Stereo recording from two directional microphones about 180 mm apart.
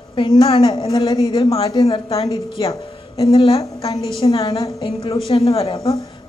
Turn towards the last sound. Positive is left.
turn(degrees=30)  # may be behind; listen again after turning